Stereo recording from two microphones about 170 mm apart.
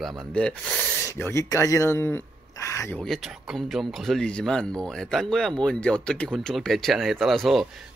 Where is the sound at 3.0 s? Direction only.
Centre (ahead or behind).